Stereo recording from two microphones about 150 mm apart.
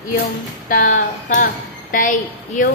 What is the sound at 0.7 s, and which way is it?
A woman's voice, 65° left (ahead or behind).